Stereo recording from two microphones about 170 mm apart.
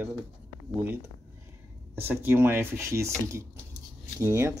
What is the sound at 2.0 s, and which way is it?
Speech, 10° right (ahead or behind).